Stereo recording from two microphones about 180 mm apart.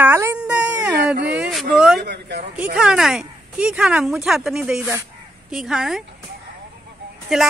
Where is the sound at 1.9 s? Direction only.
65° right (ahead or behind).